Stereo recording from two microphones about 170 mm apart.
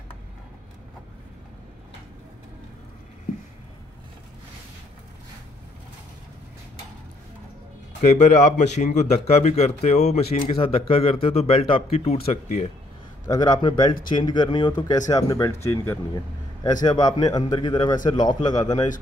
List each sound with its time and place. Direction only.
8.0 s a man's voice: 45° left (ahead or behind)
13.3 s speech: 20° left (ahead or behind)